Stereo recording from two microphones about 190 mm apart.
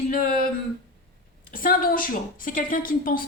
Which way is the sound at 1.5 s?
50° left (ahead or behind).